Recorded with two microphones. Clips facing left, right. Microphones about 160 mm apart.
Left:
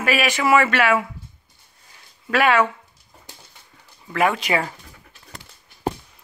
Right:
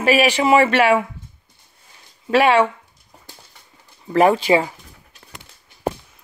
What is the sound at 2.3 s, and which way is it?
Speech, 30° right (ahead or behind).